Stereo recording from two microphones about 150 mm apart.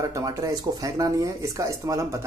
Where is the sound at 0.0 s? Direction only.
20° right (ahead or behind).